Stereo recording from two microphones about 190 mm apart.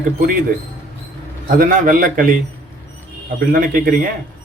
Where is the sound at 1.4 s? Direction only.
45° right (ahead or behind).